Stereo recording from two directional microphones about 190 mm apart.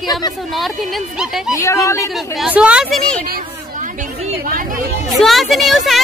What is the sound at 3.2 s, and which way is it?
Chatter, 50° right (ahead or behind).